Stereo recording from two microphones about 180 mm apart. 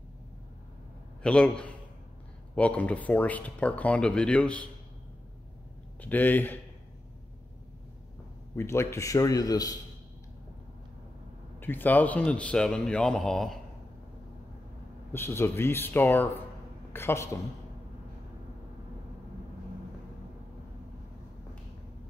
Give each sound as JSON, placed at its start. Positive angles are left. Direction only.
{"t": 1.2, "sound": "a man's voice", "side_deg": 5}
{"t": 5.9, "sound": "speech", "side_deg": 10}
{"t": 8.5, "sound": "a man's voice", "side_deg": 15}
{"t": 11.6, "sound": "a man's voice", "side_deg": 10}
{"t": 15.1, "sound": "speech", "side_deg": 15}